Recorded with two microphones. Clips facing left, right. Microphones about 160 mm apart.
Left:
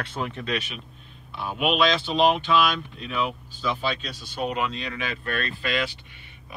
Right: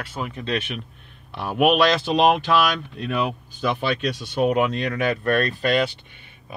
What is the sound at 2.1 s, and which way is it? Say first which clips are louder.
Speech: right 3 dB; 75° right (ahead or behind).